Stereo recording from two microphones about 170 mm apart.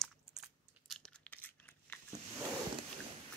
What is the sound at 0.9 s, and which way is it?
Biting, 5° left (ahead or behind).